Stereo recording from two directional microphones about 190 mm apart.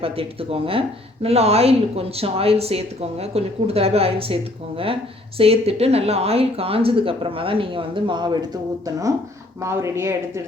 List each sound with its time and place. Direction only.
0.0 s speech: 30° right (ahead or behind)
5.4 s speech: 30° right (ahead or behind)
9.6 s speech: 15° right (ahead or behind)